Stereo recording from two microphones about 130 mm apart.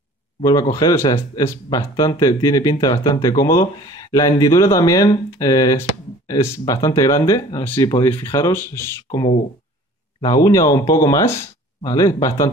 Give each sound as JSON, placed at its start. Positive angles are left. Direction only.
{"t": 0.4, "sound": "speech", "side_deg": 25}
{"t": 10.2, "sound": "speech", "side_deg": 25}